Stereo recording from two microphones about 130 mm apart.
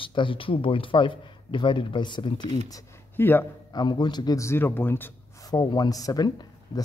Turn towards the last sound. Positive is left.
turn(degrees=30)  # may be behind; listen again after turning